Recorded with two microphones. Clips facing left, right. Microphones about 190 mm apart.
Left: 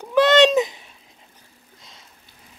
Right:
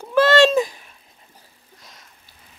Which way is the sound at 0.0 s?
20° left (ahead or behind).